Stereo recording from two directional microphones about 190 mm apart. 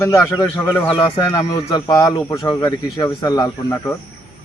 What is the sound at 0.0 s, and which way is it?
Speech, 15° left (ahead or behind).